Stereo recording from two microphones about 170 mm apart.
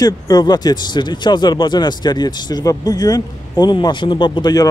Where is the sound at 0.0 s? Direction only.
25° left (ahead or behind).